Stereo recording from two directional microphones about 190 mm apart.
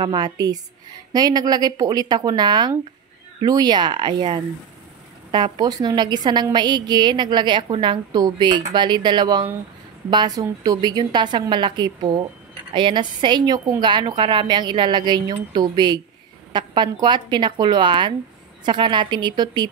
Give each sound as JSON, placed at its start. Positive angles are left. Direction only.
{"t": 0.0, "sound": "a woman's voice", "side_deg": -25}